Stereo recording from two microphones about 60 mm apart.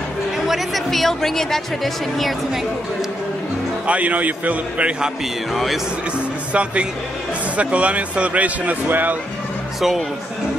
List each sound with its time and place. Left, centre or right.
0.5 s a woman's voice: centre
3.8 s speech: right
5.5 s a woman's voice: centre
6.5 s speech: centre
9.8 s a woman's voice: centre